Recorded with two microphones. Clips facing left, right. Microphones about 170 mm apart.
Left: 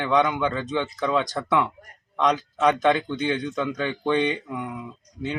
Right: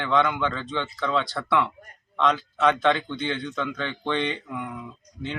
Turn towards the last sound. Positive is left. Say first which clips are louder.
# left 3 dB
turn(degrees=15)  # may be behind; listen again after turning